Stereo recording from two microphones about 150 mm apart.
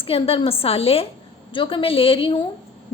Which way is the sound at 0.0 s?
40° left (ahead or behind).